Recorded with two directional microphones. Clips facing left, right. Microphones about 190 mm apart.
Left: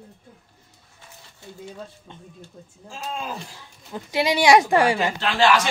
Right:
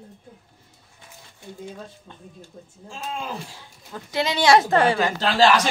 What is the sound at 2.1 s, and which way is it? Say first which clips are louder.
Speech: left 1 dB; 20° left (ahead or behind).